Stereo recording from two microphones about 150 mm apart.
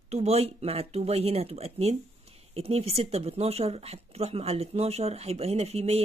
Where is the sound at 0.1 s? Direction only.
45° right (ahead or behind).